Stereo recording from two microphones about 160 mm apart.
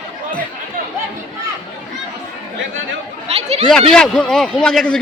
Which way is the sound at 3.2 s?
40° right (ahead or behind).